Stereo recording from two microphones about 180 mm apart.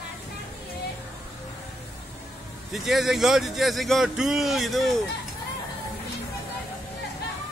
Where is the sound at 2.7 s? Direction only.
Centre (ahead or behind).